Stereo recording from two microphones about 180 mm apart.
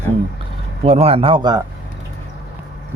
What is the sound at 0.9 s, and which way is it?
Speech, 35° right (ahead or behind).